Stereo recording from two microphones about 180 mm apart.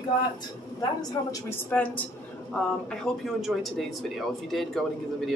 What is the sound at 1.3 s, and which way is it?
Speech, 10° left (ahead or behind).